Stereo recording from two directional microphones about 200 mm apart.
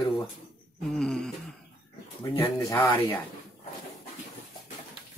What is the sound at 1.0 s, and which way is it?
Speech, 5° left (ahead or behind).